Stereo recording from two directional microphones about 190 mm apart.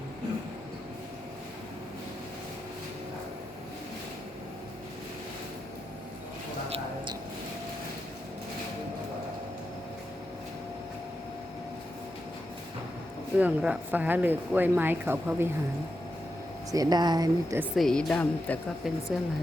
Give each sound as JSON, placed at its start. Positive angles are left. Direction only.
{"t": 6.7, "sound": "a sound", "side_deg": -25}
{"t": 13.3, "sound": "speech", "side_deg": -5}
{"t": 16.7, "sound": "a woman's voice", "side_deg": -20}
{"t": 17.7, "sound": "speech", "side_deg": 5}